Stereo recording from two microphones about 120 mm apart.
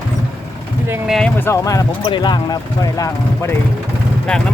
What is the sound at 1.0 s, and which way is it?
Speech, centre (ahead or behind).